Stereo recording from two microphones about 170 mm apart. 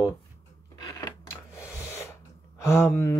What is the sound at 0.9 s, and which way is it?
Gasp, 20° left (ahead or behind).